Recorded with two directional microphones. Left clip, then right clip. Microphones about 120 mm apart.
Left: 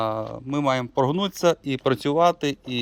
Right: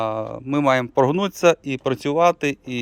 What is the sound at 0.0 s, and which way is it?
Speech, 10° right (ahead or behind).